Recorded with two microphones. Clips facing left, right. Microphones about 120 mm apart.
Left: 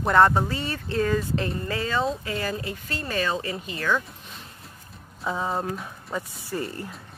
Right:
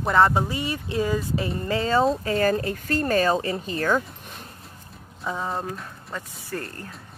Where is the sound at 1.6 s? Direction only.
30° right (ahead or behind).